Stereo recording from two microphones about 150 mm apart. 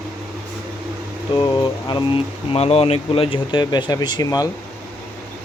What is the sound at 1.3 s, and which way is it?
Speech, 30° left (ahead or behind).